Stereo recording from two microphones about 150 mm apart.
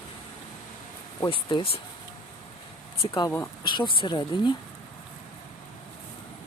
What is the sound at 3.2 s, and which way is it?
Speech, 20° left (ahead or behind).